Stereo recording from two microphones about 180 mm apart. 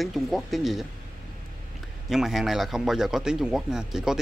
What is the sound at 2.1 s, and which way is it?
Speech, centre (ahead or behind).